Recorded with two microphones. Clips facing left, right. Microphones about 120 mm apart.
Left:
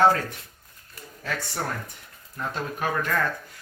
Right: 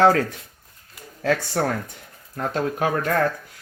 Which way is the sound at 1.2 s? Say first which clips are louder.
Right 9 dB; 65° right (ahead or behind).